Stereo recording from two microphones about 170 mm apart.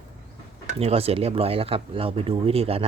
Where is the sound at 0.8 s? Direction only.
35° right (ahead or behind).